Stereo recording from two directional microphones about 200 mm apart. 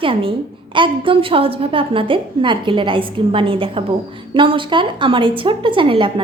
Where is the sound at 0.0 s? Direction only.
25° right (ahead or behind).